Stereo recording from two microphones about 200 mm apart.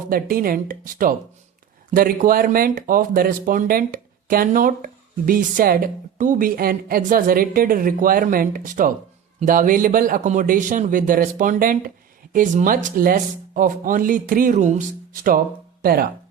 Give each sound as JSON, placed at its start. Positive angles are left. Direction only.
{"t": 0.1, "sound": "speech", "side_deg": -45}